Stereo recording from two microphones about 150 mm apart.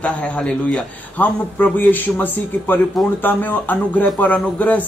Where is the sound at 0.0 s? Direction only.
5° left (ahead or behind).